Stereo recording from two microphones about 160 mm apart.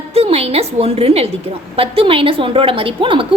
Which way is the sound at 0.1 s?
40° right (ahead or behind).